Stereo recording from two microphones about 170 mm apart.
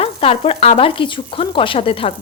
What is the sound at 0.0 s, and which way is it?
Speech, 35° left (ahead or behind).